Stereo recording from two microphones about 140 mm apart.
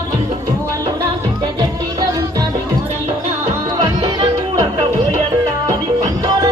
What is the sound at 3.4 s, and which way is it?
Music, 25° right (ahead or behind).